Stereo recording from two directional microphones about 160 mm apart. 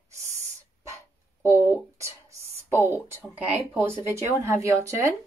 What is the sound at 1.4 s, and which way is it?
A child's voice, 15° right (ahead or behind).